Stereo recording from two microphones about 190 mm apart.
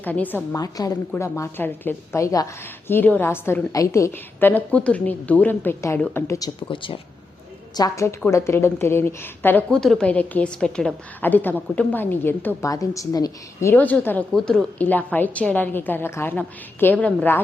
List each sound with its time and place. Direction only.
0.0 s a woman's voice: 10° left (ahead or behind)
6.6 s a woman's voice: 25° left (ahead or behind); by 17.4 s 10° left (ahead or behind)